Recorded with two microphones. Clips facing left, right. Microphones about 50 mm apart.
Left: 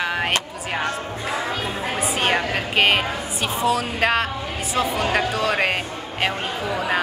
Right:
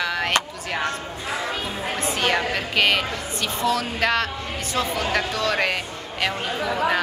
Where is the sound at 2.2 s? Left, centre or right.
Left.